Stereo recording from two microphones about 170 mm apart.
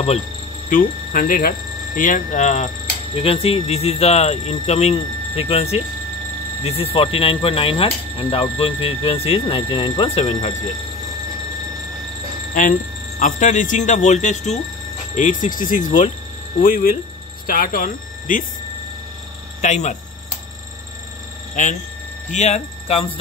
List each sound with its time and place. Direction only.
0.7 s speech: 55° left (ahead or behind); by 10.5 s 35° left (ahead or behind)
13.2 s speech: 50° left (ahead or behind)
19.6 s speech: 45° left (ahead or behind)
22.3 s speech: 40° left (ahead or behind)